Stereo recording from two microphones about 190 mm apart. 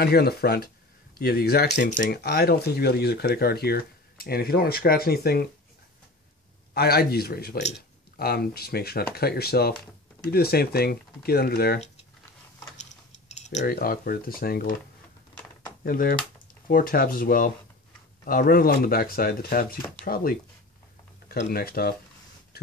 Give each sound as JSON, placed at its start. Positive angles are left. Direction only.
{"t": 0.0, "sound": "speech", "side_deg": 55}
{"t": 6.7, "sound": "speech", "side_deg": 55}
{"t": 13.6, "sound": "speech", "side_deg": 55}
{"t": 15.8, "sound": "speech", "side_deg": 50}
{"t": 21.3, "sound": "speech", "side_deg": 55}